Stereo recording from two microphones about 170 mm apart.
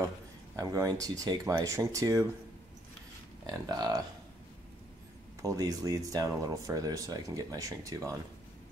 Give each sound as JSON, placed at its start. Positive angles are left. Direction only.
{"t": 0.6, "sound": "speech", "side_deg": -20}
{"t": 3.4, "sound": "speech", "side_deg": -25}
{"t": 5.4, "sound": "speech", "side_deg": -20}